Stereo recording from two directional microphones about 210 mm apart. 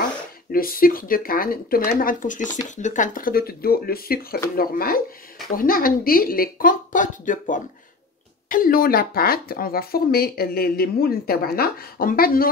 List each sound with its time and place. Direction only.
0.5 s speech: 45° left (ahead or behind)